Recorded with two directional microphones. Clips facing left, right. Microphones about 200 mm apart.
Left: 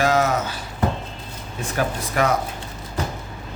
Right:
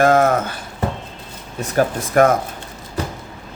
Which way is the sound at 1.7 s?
50° right (ahead or behind).